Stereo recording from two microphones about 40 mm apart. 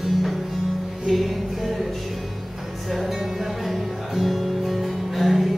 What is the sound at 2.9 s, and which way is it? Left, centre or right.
Music, centre.